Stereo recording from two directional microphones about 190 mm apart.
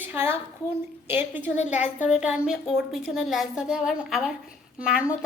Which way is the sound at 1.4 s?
40° left (ahead or behind).